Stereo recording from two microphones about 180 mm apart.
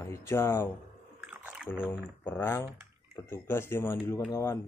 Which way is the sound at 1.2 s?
10° right (ahead or behind).